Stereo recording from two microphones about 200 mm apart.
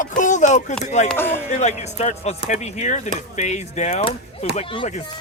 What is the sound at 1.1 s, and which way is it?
Speech, 10° left (ahead or behind).